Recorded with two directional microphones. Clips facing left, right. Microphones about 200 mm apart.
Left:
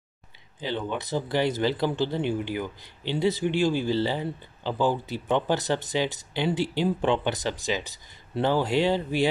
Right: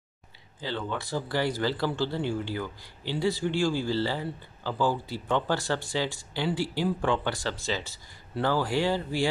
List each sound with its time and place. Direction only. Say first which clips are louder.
0.6 s speech: left 3 dB; 20° left (ahead or behind)